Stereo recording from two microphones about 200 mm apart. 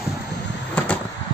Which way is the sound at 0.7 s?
5° left (ahead or behind).